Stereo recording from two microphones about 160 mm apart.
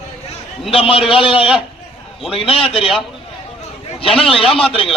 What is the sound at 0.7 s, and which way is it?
Speech, 35° left (ahead or behind).